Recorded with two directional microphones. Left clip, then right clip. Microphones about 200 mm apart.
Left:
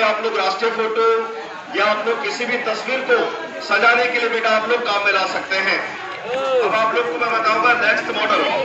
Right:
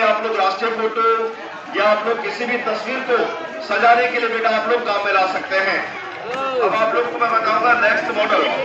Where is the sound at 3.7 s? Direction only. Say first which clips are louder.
Right 1 dB; 10° left (ahead or behind).